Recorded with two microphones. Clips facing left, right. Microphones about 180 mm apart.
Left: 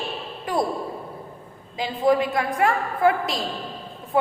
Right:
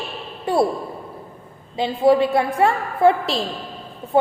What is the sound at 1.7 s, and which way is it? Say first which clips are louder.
A woman's voice: right 4 dB; 30° right (ahead or behind).